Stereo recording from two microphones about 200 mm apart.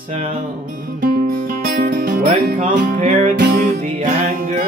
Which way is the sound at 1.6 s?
40° right (ahead or behind).